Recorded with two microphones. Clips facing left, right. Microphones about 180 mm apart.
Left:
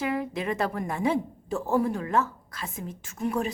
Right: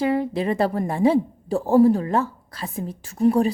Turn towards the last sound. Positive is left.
turn(degrees=-35)  # may be behind; listen again after turning